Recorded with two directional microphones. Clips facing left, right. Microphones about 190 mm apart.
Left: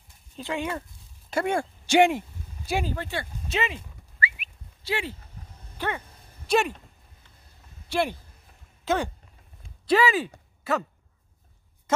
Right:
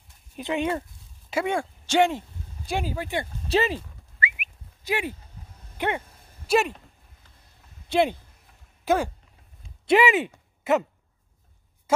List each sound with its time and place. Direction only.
0.4 s speech: 20° right (ahead or behind)
1.3 s speech: centre (ahead or behind)
1.9 s a sound: 10° left (ahead or behind)
2.9 s speech: 15° right (ahead or behind)
3.4 s speech: 35° right (ahead or behind)
4.2 s whistling: 20° right (ahead or behind)
5.8 s speech: 20° right (ahead or behind)
6.4 s speech: 5° right (ahead or behind)
7.9 s speech: 20° right (ahead or behind)
8.8 s speech: 5° right (ahead or behind)
9.8 s speech: 20° right (ahead or behind)
10.6 s a sound: 20° right (ahead or behind)